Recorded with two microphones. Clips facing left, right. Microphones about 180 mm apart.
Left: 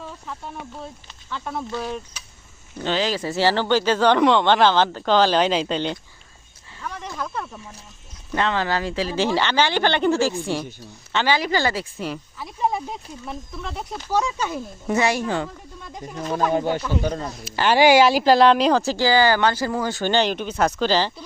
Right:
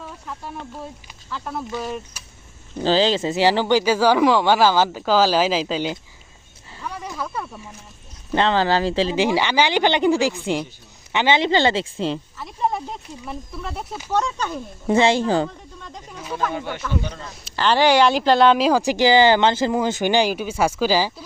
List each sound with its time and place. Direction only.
0.8 s speech: 5° right (ahead or behind)
2.8 s speech: 30° right (ahead or behind); by 6.0 s 5° right (ahead or behind)
6.8 s snake: 10° right (ahead or behind)
8.3 s a woman's voice: 30° right (ahead or behind)
9.1 s a woman's voice: 15° right (ahead or behind)
12.4 s speech: centre (ahead or behind)
14.8 s a woman's voice: 25° right (ahead or behind)
16.6 s speech: 35° left (ahead or behind)
17.4 s speech: 10° left (ahead or behind)
18.8 s speech: 15° right (ahead or behind)